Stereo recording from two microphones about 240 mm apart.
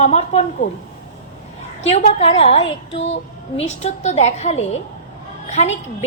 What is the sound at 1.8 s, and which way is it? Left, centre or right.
A woman's voice, left.